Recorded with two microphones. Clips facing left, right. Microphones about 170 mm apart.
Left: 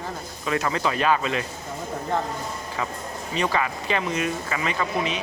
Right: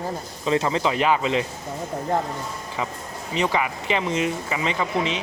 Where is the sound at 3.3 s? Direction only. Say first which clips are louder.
Right 2 dB; 20° right (ahead or behind).